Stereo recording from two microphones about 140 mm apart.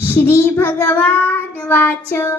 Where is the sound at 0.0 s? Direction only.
15° left (ahead or behind).